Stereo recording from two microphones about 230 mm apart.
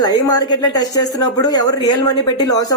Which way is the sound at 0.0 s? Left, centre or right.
Centre.